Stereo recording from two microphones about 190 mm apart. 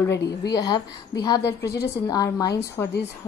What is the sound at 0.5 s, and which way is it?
A woman's voice, 20° left (ahead or behind).